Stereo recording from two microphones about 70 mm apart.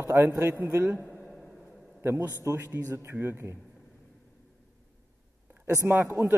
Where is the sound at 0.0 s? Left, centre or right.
Right.